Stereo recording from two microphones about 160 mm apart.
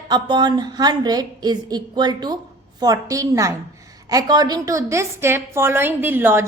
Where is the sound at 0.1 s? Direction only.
25° right (ahead or behind).